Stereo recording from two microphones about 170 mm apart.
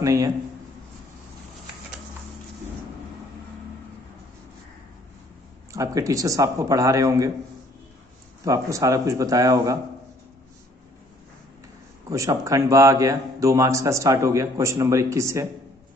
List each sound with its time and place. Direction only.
0.0 s a man's voice: 20° right (ahead or behind)
5.7 s a man's voice: 20° right (ahead or behind)
8.5 s a man's voice: 20° right (ahead or behind)
12.1 s a man's voice: 20° right (ahead or behind)